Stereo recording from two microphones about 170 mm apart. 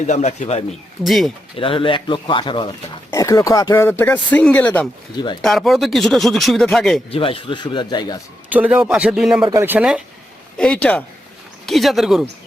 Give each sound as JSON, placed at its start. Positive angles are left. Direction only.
{"t": 0.1, "sound": "speech", "side_deg": 45}
{"t": 0.7, "sound": "speech", "side_deg": 0}
{"t": 1.5, "sound": "speech", "side_deg": 30}
{"t": 5.1, "sound": "speech", "side_deg": 25}
{"t": 5.4, "sound": "speech", "side_deg": 0}
{"t": 7.1, "sound": "speech", "side_deg": 35}
{"t": 8.5, "sound": "speech", "side_deg": -10}
{"t": 9.4, "sound": "speech", "side_deg": -20}
{"t": 10.6, "sound": "speech", "side_deg": 5}